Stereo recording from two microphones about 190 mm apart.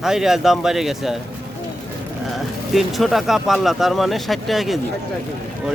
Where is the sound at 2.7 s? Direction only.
Centre (ahead or behind).